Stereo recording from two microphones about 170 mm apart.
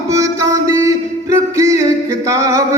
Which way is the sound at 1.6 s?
20° right (ahead or behind).